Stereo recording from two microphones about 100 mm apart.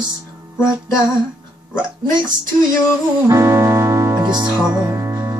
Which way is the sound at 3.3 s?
30° right (ahead or behind).